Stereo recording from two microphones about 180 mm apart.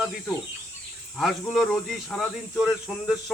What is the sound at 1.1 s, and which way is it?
Speech, centre (ahead or behind).